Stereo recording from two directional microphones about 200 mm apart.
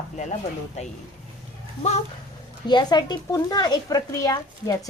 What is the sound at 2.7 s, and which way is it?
Speech, 20° left (ahead or behind).